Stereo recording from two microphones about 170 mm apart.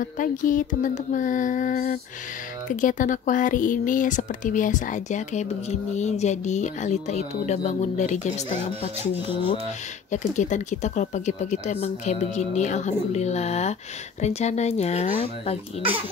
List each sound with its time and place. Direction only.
0.0 s speech: 50° left (ahead or behind)
10.1 s speech: 45° left (ahead or behind)